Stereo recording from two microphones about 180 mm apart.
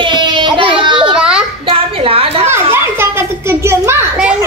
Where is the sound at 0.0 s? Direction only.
25° right (ahead or behind).